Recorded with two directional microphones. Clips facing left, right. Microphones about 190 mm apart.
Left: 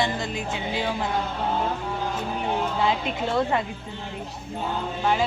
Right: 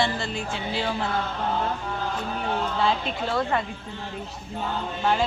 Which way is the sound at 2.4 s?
15° left (ahead or behind).